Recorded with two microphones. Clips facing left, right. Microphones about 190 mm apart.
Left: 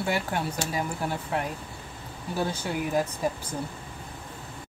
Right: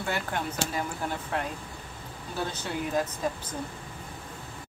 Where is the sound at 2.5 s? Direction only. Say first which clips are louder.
Left 3 dB; 10° left (ahead or behind).